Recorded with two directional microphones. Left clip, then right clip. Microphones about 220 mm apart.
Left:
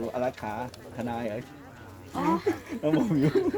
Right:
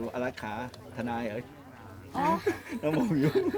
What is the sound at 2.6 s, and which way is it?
Speech, 5° left (ahead or behind).